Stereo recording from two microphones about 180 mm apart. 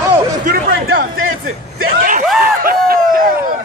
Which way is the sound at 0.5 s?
55° right (ahead or behind).